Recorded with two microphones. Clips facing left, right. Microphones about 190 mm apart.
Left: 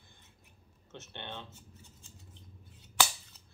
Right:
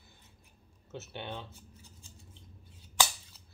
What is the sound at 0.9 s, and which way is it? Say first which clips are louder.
Speech: right 4 dB; 5° right (ahead or behind).